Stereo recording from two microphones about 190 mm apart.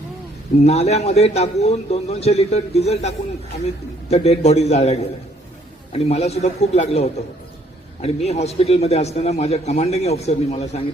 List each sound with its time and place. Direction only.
0.6 s a man's voice: 35° left (ahead or behind)